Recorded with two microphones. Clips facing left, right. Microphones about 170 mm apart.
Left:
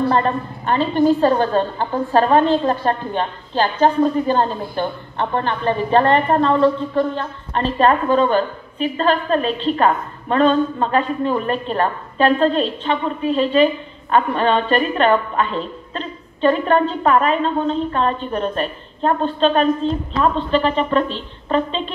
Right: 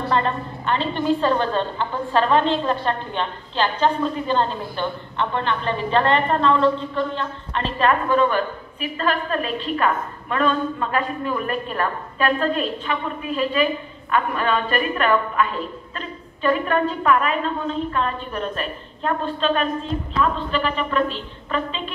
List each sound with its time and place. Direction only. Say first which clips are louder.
0.1 s a woman's voice: left 3 dB; 45° left (ahead or behind)